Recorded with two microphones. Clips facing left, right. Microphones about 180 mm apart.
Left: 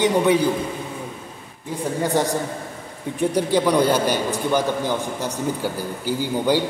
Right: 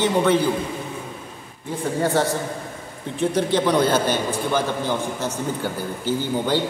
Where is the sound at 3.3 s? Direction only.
10° left (ahead or behind).